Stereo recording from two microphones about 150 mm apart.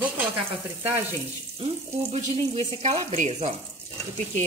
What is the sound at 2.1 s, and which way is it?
Frying, 45° right (ahead or behind).